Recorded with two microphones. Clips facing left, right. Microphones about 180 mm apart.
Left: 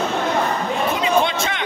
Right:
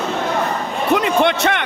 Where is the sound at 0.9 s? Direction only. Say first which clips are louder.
Right 6 dB; 65° right (ahead or behind).